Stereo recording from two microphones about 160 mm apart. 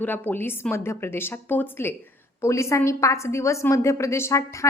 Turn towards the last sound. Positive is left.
turn(degrees=20)  # may be behind; listen again after turning